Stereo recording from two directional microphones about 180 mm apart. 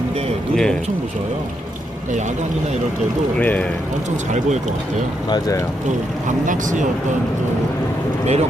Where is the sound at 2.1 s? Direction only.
40° right (ahead or behind).